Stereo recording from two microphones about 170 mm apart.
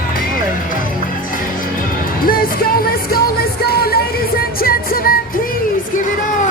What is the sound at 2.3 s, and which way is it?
Music, 60° left (ahead or behind).